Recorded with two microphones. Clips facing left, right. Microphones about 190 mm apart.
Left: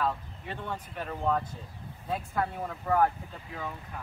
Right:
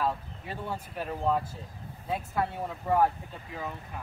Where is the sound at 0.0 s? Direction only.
5° right (ahead or behind).